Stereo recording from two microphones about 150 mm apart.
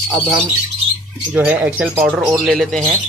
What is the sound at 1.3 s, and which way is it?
Speech, 10° right (ahead or behind).